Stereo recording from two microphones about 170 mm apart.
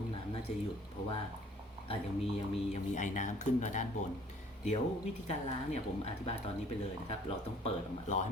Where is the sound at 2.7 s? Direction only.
45° left (ahead or behind).